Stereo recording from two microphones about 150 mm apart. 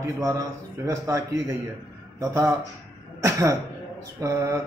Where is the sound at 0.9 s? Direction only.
20° right (ahead or behind).